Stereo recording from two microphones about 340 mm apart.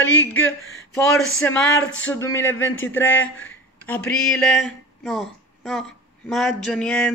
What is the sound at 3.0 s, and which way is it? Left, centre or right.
Speech, left.